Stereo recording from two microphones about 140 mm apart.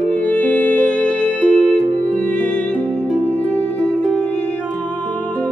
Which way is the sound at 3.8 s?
5° left (ahead or behind).